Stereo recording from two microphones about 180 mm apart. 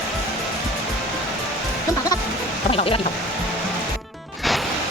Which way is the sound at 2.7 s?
30° left (ahead or behind).